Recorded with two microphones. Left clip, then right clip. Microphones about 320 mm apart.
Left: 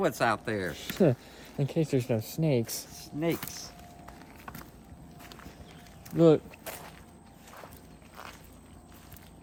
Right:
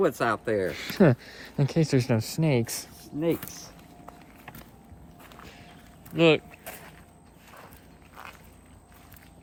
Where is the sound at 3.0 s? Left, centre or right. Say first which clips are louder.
Right 4 dB; centre.